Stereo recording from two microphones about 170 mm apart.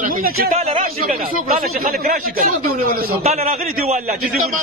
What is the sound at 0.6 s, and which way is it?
Speech, 35° right (ahead or behind).